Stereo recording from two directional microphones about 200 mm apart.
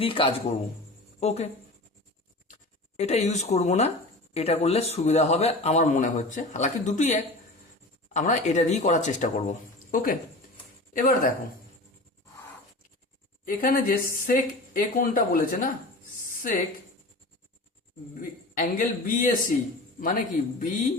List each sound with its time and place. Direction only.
0.0 s a man's voice: 25° left (ahead or behind)
3.0 s a man's voice: 35° left (ahead or behind)
13.4 s speech: 45° left (ahead or behind)
18.2 s a man's voice: 40° left (ahead or behind)